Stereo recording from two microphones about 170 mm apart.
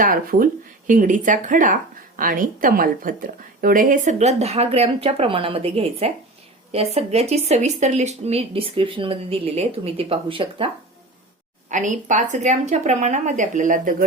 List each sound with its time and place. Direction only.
0.0 s speech: 55° right (ahead or behind); by 10.7 s 30° right (ahead or behind)
11.7 s speech: 45° right (ahead or behind)